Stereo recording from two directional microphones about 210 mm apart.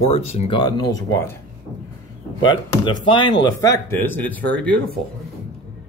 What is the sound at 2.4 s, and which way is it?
Speech, 20° left (ahead or behind).